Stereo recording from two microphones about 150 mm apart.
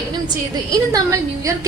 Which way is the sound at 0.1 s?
25° right (ahead or behind).